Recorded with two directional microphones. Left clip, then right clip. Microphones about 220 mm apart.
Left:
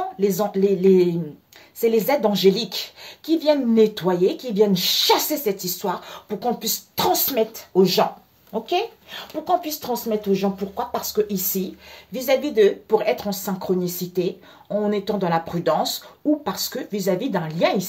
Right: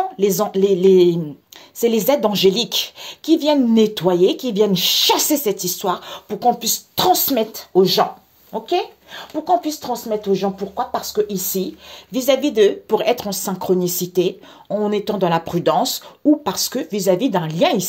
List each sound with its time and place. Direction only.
0.2 s speech: 35° right (ahead or behind)